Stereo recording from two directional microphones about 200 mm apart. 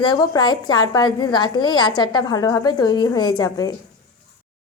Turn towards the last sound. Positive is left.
turn(degrees=15)  # may be behind; listen again after turning